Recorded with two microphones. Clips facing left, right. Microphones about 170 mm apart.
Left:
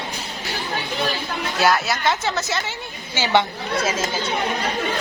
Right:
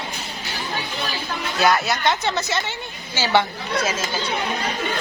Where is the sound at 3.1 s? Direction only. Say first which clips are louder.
Even; 15° left (ahead or behind).